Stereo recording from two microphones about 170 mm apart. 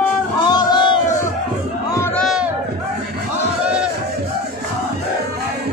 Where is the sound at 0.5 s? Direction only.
25° left (ahead or behind).